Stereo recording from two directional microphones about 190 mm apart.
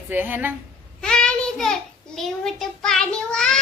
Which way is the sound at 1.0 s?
5° left (ahead or behind).